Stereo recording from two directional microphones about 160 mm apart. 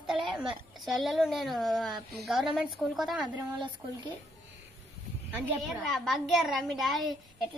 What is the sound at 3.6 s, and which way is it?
Speech, 30° right (ahead or behind).